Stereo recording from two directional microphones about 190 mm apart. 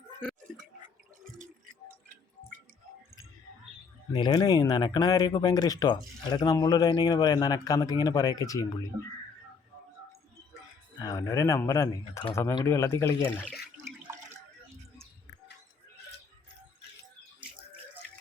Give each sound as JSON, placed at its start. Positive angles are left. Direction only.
{"t": 4.1, "sound": "speech", "side_deg": 25}
{"t": 11.0, "sound": "speech", "side_deg": 20}